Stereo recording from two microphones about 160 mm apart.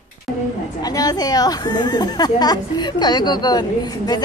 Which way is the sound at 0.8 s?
25° left (ahead or behind).